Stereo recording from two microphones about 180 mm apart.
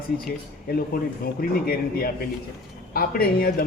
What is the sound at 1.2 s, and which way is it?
A man's voice, 55° left (ahead or behind).